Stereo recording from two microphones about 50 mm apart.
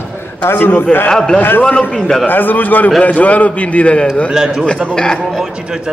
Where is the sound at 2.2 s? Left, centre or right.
Left.